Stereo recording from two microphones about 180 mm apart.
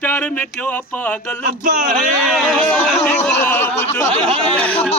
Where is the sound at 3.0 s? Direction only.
10° left (ahead or behind).